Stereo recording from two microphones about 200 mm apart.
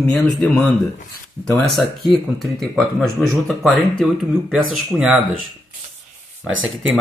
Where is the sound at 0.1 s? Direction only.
Centre (ahead or behind).